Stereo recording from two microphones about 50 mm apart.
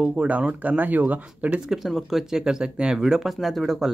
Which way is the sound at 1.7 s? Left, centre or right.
Centre.